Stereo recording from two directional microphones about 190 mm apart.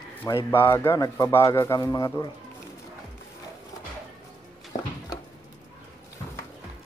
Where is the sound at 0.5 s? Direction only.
10° left (ahead or behind).